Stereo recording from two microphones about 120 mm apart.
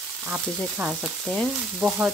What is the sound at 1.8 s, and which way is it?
Speech, 5° right (ahead or behind).